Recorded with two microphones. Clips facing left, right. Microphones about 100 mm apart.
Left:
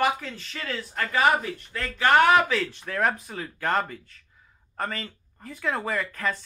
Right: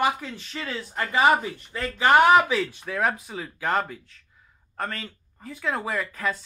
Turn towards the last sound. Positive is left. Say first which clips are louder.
# even
turn(degrees=-5)  # may be behind; listen again after turning